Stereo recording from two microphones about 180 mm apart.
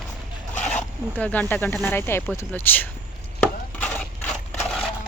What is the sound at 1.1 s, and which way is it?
Speech, 10° left (ahead or behind).